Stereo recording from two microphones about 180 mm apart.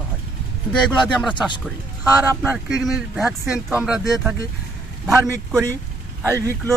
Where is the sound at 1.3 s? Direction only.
25° left (ahead or behind).